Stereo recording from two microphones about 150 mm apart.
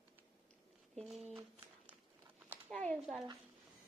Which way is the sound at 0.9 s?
Centre (ahead or behind).